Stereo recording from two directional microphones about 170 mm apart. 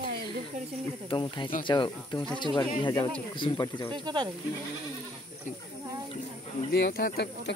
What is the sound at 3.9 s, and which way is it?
Speech, 25° right (ahead or behind).